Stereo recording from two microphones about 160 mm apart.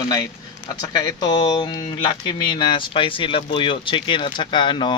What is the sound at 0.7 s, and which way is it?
Speech, 25° left (ahead or behind).